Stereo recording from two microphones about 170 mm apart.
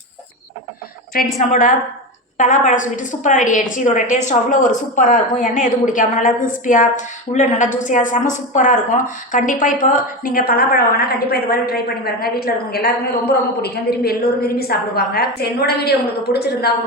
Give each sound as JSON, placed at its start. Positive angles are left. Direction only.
{"t": 1.4, "sound": "a woman's voice", "side_deg": 50}